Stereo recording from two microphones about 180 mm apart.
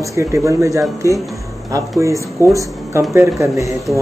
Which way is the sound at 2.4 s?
15° left (ahead or behind).